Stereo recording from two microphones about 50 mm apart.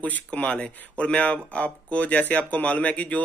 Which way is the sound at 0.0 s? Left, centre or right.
Left.